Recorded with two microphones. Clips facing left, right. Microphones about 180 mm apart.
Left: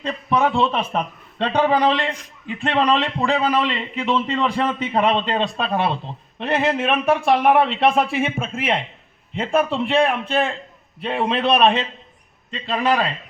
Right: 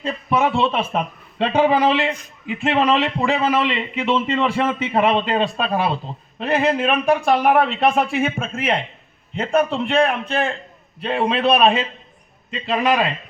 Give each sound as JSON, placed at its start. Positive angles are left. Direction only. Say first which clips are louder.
{"t": 0.3, "sound": "a man's voice", "louder": "even", "side_deg": -10}